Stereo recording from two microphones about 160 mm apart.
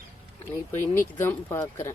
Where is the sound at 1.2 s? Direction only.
15° left (ahead or behind).